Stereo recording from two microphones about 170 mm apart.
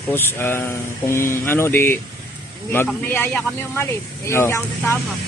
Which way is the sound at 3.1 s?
10° left (ahead or behind).